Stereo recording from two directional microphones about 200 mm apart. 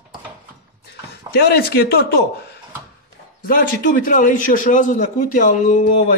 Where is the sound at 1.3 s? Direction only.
50° left (ahead or behind).